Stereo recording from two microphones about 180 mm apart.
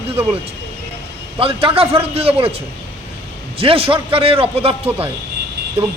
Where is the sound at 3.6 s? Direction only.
30° right (ahead or behind).